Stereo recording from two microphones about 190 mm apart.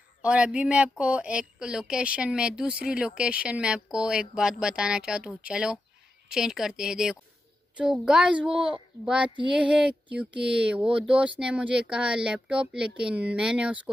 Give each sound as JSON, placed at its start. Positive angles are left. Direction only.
{"t": 0.2, "sound": "a woman's voice", "side_deg": -5}
{"t": 8.5, "sound": "a child's voice", "side_deg": -25}
{"t": 9.0, "sound": "a woman's voice", "side_deg": -5}